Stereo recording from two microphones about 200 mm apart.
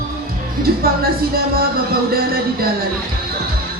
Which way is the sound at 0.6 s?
50° right (ahead or behind).